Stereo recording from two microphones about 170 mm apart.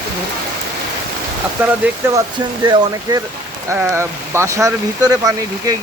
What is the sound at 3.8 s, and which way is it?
Speech, 10° right (ahead or behind).